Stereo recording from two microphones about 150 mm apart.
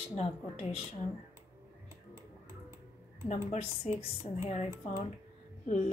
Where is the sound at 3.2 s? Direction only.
45° left (ahead or behind).